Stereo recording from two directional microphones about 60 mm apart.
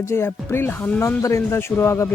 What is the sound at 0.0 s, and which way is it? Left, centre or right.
Speech, left.